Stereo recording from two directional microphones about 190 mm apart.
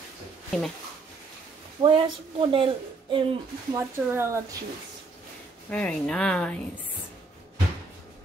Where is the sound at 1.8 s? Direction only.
25° right (ahead or behind).